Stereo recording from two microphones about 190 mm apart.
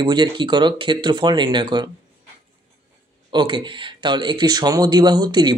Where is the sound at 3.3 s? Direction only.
25° right (ahead or behind).